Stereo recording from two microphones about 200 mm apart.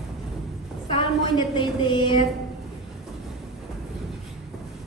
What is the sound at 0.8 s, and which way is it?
A woman's voice, 25° left (ahead or behind).